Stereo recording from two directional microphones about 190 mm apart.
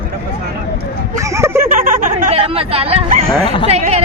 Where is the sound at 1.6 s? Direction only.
45° right (ahead or behind).